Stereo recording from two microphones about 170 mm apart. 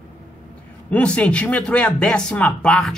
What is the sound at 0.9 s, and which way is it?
Speech, 5° left (ahead or behind).